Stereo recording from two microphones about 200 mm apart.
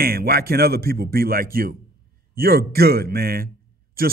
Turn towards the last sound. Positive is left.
turn(degrees=-45)  # may be behind; listen again after turning